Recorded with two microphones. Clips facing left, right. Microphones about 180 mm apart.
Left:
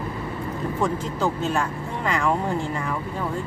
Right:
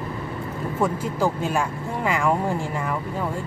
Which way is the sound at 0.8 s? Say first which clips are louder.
Right 2 dB; 10° right (ahead or behind).